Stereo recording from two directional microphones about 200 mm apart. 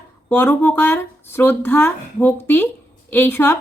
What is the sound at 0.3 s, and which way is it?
Speech, 10° left (ahead or behind).